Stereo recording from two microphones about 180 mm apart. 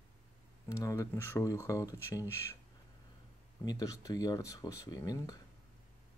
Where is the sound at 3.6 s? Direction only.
20° left (ahead or behind).